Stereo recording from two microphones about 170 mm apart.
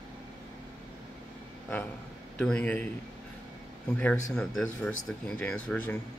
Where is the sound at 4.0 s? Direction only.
5° left (ahead or behind).